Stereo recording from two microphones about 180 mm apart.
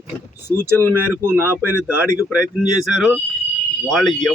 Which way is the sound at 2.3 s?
5° right (ahead or behind).